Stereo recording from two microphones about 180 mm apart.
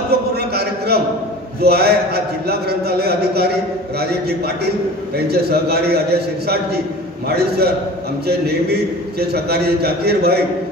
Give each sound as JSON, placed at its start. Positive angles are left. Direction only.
{"t": 0.1, "sound": "a sound", "side_deg": -60}
{"t": 1.6, "sound": "a man's voice", "side_deg": -60}
{"t": 4.6, "sound": "a man's voice", "side_deg": -60}